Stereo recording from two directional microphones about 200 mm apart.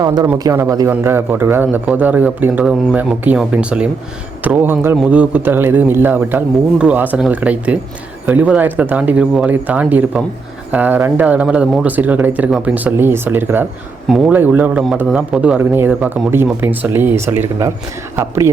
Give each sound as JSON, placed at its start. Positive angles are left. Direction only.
{"t": 0.0, "sound": "a man's voice", "side_deg": -20}